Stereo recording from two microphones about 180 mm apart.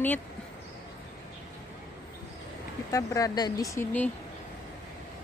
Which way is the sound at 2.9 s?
20° left (ahead or behind).